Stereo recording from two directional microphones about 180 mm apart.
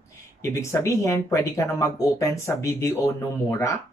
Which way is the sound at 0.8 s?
15° left (ahead or behind).